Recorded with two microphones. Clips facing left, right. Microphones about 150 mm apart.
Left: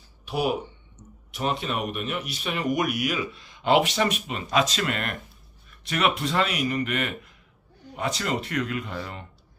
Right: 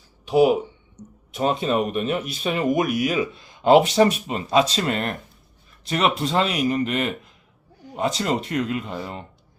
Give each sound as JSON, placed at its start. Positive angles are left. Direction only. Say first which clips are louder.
{"t": 0.3, "sound": "speech", "louder": "right 9 dB", "side_deg": -20}
{"t": 1.3, "sound": "speech", "louder": "right 6 dB", "side_deg": -30}